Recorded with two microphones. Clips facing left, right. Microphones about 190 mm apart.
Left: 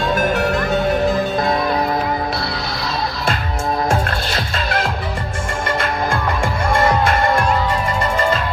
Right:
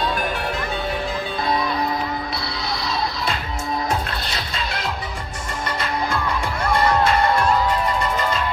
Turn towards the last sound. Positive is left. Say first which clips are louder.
# left 2 dB
turn(degrees=50)  # may be behind; listen again after turning